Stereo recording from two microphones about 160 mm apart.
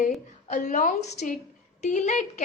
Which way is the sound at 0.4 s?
50° left (ahead or behind).